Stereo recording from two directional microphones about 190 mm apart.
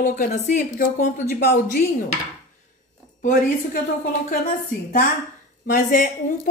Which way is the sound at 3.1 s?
45° left (ahead or behind).